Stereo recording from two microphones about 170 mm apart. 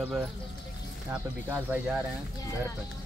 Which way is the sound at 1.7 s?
10° right (ahead or behind).